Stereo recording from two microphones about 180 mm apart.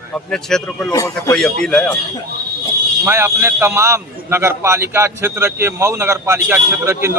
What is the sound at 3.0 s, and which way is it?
A man's voice, 10° right (ahead or behind).